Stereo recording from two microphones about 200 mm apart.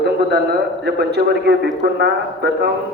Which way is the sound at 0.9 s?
55° right (ahead or behind).